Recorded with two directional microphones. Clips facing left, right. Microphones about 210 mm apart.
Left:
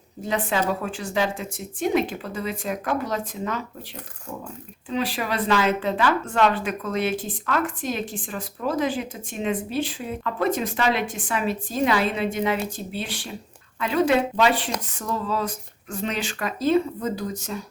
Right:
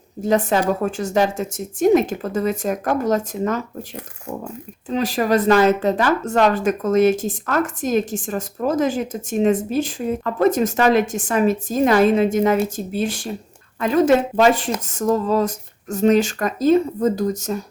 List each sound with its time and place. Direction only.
0.2 s a woman's voice: 45° right (ahead or behind)
4.9 s a woman's voice: 45° right (ahead or behind)